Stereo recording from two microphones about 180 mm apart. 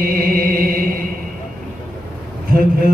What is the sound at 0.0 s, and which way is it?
Music, 55° right (ahead or behind).